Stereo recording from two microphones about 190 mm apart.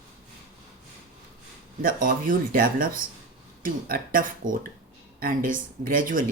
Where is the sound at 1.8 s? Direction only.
45° right (ahead or behind).